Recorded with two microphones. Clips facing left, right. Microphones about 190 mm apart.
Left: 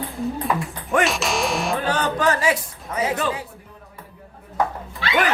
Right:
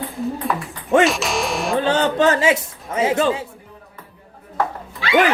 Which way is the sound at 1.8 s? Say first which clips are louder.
Right 7 dB; 25° right (ahead or behind).